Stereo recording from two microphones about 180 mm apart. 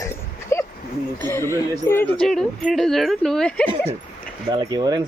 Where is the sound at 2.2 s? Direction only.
Centre (ahead or behind).